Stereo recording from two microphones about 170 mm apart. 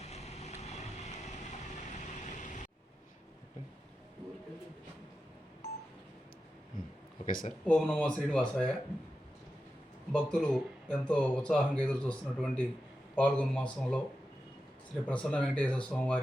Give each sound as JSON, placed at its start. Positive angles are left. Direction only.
{"t": 0.0, "sound": "vehicle", "side_deg": 40}
{"t": 7.3, "sound": "speech", "side_deg": 55}
{"t": 7.6, "sound": "speech", "side_deg": 5}
{"t": 10.1, "sound": "speech", "side_deg": 5}
{"t": 15.0, "sound": "speech", "side_deg": 5}